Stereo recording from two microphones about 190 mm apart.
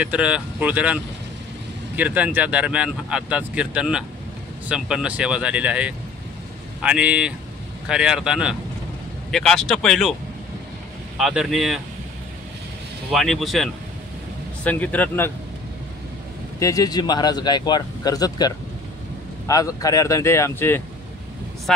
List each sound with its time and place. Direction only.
0.0 s speech: 5° right (ahead or behind)
2.0 s speech: 10° right (ahead or behind)
11.1 s speech: centre (ahead or behind)
13.1 s speech: centre (ahead or behind)
16.5 s speech: 15° left (ahead or behind)